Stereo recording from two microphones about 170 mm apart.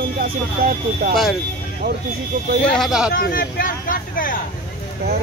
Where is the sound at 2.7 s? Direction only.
Centre (ahead or behind).